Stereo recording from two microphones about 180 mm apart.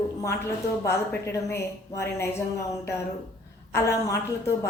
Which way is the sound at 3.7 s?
15° left (ahead or behind).